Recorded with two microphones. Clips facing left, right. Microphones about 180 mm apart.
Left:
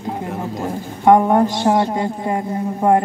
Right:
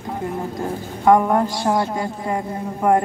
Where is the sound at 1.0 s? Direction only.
25° left (ahead or behind).